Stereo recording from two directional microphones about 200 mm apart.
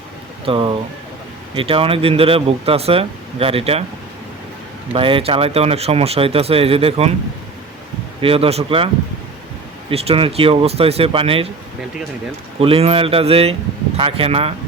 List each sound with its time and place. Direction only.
0.4 s speech: 25° right (ahead or behind)
4.9 s speech: 25° right (ahead or behind)
8.2 s speech: 30° right (ahead or behind)
9.9 s speech: 30° right (ahead or behind)
12.5 s speech: 30° right (ahead or behind)